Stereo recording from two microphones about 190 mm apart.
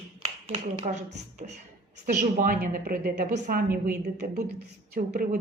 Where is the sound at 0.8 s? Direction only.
35° right (ahead or behind).